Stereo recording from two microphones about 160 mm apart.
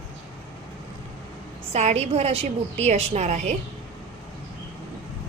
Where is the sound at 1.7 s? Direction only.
45° right (ahead or behind).